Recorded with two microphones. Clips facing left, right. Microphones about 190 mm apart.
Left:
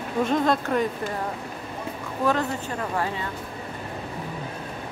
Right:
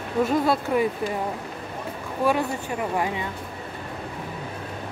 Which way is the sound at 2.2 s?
15° right (ahead or behind).